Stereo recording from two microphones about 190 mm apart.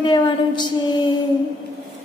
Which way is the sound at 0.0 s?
25° left (ahead or behind).